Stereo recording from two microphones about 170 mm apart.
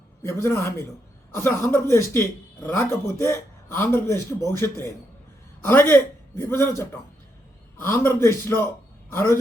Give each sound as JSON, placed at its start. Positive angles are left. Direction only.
{"t": 0.2, "sound": "a man's voice", "side_deg": 15}
{"t": 7.9, "sound": "a man's voice", "side_deg": 15}